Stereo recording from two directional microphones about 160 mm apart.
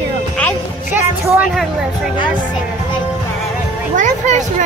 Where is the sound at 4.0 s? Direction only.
50° right (ahead or behind).